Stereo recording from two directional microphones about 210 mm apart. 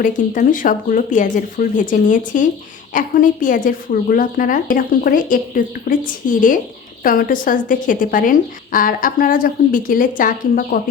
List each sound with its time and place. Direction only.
0.0 s speech: 40° left (ahead or behind)